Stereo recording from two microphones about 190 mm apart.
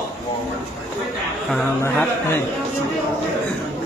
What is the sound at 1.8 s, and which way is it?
Speech, 10° left (ahead or behind).